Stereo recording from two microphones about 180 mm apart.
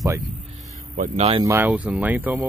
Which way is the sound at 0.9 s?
40° right (ahead or behind).